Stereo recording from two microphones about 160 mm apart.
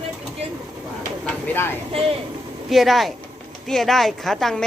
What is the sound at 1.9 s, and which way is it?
Speech, 35° right (ahead or behind).